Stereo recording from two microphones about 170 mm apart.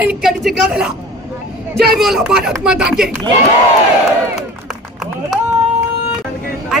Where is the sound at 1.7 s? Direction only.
70° right (ahead or behind).